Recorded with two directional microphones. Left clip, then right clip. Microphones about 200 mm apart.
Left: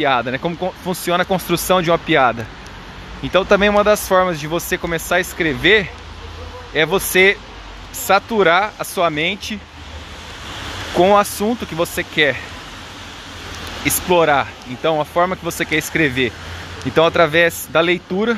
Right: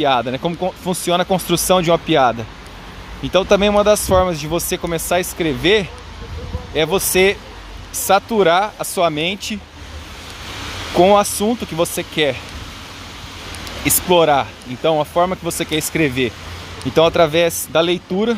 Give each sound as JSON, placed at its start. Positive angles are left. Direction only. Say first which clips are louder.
{"t": 0.0, "sound": "speech", "louder": "right 1 dB", "side_deg": -15}
{"t": 11.0, "sound": "speech", "louder": "right 1 dB", "side_deg": -15}
{"t": 14.0, "sound": "speech", "louder": "right 1 dB", "side_deg": -15}